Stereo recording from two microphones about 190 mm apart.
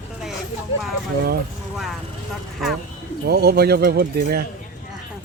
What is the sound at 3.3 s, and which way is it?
Speech, 55° right (ahead or behind).